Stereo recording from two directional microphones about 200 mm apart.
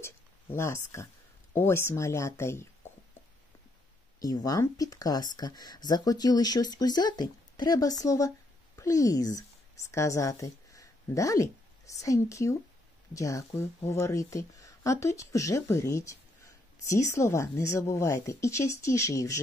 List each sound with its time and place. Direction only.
0.0 s speech: 15° left (ahead or behind)
4.2 s a woman's voice: 20° left (ahead or behind)